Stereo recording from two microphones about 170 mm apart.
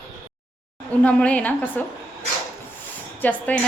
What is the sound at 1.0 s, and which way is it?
Speech, 5° left (ahead or behind).